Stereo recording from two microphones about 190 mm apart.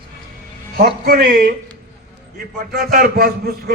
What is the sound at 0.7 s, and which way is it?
Speech, 50° right (ahead or behind).